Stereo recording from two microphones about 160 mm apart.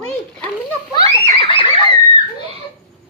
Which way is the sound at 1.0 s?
30° left (ahead or behind).